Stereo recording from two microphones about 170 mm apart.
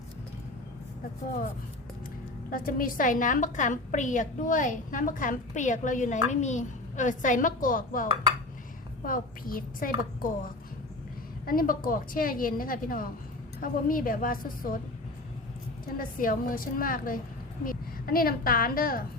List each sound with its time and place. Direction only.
2.5 s a woman's voice: 55° left (ahead or behind)
9.0 s a woman's voice: 55° left (ahead or behind)
16.0 s a woman's voice: 55° left (ahead or behind)